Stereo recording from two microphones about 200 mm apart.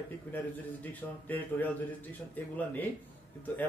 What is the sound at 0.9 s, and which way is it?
Speech, 10° left (ahead or behind).